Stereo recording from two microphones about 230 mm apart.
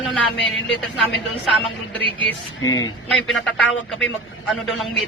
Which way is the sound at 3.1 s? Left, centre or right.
Centre.